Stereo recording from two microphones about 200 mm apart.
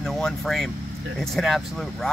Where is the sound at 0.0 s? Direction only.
Centre (ahead or behind).